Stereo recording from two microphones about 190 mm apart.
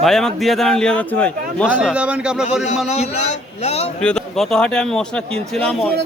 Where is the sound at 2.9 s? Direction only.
35° left (ahead or behind).